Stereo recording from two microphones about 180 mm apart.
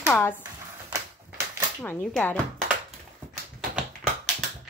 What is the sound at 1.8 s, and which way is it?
Speech, 10° left (ahead or behind).